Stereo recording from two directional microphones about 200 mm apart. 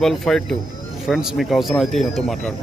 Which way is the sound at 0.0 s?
Centre (ahead or behind).